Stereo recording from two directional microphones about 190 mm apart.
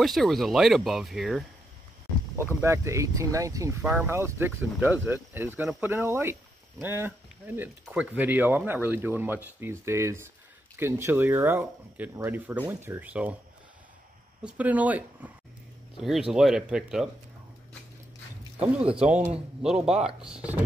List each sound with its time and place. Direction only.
0.0 s speech: centre (ahead or behind)
2.3 s speech: 15° right (ahead or behind)
14.4 s speech: 10° right (ahead or behind)
18.9 s speech: 5° right (ahead or behind)
19.9 s speech: 35° right (ahead or behind)
20.2 s speech: 5° right (ahead or behind)